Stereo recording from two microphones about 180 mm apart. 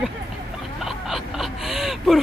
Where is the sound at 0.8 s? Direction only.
Centre (ahead or behind).